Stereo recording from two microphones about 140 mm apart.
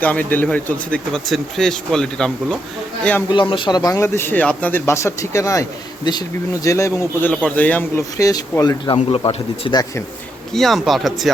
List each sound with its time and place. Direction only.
0.0 s speech: 10° left (ahead or behind)
3.3 s a man's voice: 35° left (ahead or behind)
8.9 s speech: 40° left (ahead or behind)
10.5 s speech: centre (ahead or behind)